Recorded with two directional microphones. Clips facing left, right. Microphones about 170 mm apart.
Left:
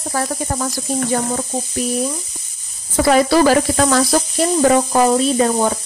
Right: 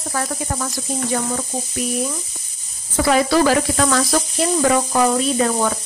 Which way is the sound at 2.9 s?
40° left (ahead or behind).